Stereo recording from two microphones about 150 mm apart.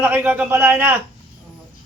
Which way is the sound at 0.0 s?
10° right (ahead or behind).